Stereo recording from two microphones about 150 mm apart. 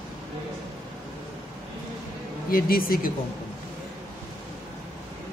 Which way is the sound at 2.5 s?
75° left (ahead or behind).